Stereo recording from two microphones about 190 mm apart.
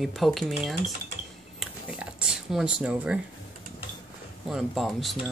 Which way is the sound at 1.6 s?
5° right (ahead or behind).